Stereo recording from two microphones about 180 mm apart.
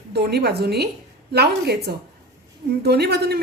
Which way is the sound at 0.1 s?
65° right (ahead or behind).